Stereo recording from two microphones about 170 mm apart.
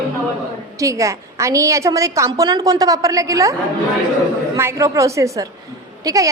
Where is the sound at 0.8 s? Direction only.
20° right (ahead or behind).